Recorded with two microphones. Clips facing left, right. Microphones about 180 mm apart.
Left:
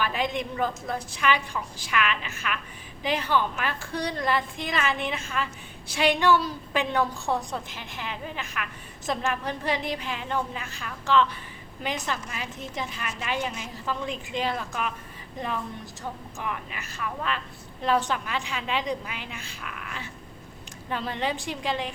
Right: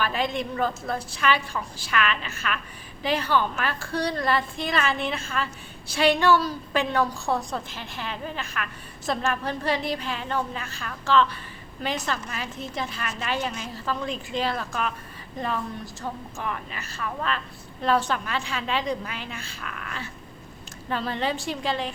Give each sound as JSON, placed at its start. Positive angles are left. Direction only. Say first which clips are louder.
{"t": 0.0, "sound": "a woman's voice", "louder": "right 1 dB", "side_deg": 15}